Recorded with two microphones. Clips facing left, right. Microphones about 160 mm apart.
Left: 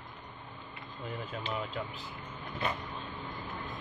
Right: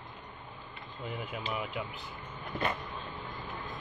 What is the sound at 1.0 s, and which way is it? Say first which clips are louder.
Speech: right 1 dB; 15° right (ahead or behind).